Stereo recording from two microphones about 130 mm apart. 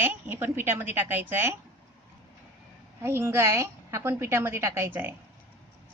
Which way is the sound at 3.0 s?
20° right (ahead or behind).